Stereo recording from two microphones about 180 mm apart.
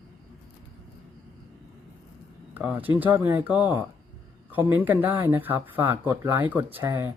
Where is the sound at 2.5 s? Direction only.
10° right (ahead or behind).